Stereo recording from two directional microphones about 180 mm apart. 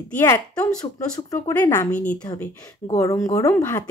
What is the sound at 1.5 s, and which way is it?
Speech, 10° left (ahead or behind).